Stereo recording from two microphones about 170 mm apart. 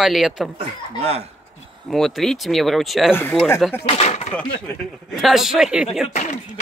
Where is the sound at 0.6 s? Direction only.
35° right (ahead or behind).